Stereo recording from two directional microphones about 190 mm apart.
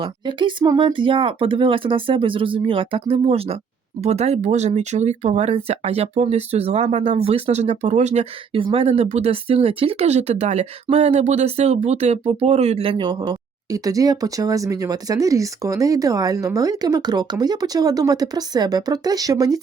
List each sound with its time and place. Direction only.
0.0 s speech: 25° right (ahead or behind)